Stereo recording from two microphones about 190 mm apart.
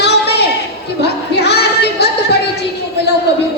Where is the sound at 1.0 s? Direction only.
60° left (ahead or behind).